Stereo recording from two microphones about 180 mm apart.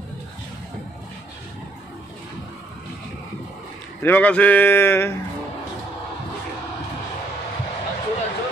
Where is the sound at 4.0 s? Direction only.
10° left (ahead or behind).